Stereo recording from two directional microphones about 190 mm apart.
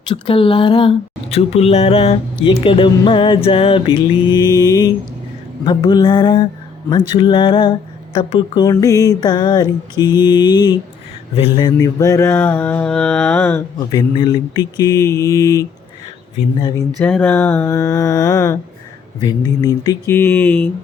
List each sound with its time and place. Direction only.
0.1 s speech: 25° left (ahead or behind)
11.8 s mantra: 15° left (ahead or behind)
13.7 s mantra: 20° left (ahead or behind)
16.6 s speech: 25° left (ahead or behind)
17.0 s mantra: 5° left (ahead or behind)